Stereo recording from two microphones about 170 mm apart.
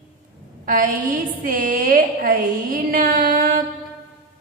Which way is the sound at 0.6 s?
55° right (ahead or behind).